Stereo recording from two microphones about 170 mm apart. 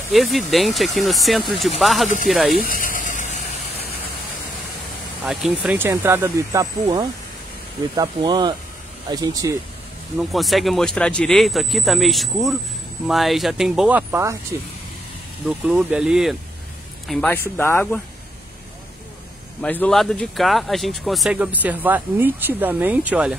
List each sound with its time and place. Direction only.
0.1 s speech: centre (ahead or behind)
2.5 s vehicle: 55° left (ahead or behind)
5.2 s speech: 5° right (ahead or behind); by 9.6 s 20° right (ahead or behind)
10.1 s speech: centre (ahead or behind); by 14.7 s 15° right (ahead or behind)
15.4 s speech: 5° right (ahead or behind); by 18.0 s 10° left (ahead or behind)
19.6 s speech: 10° left (ahead or behind); by 23.3 s 10° right (ahead or behind)